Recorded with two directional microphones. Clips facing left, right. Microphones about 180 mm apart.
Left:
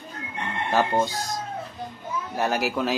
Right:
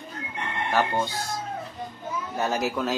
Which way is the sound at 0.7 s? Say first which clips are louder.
Left 3 dB; 15° left (ahead or behind).